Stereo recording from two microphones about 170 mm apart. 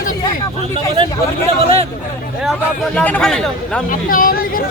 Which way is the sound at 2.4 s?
5° left (ahead or behind).